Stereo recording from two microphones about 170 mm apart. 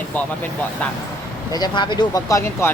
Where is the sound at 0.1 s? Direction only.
10° left (ahead or behind).